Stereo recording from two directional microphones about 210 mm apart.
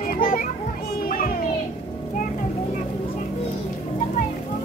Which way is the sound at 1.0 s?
40° left (ahead or behind).